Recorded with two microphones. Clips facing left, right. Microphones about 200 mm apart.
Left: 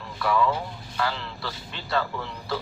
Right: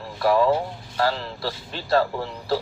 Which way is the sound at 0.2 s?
35° right (ahead or behind).